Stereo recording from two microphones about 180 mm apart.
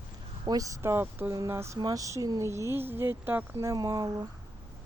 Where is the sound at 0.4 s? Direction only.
20° right (ahead or behind).